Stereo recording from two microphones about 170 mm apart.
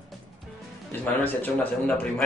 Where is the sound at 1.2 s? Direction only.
10° left (ahead or behind).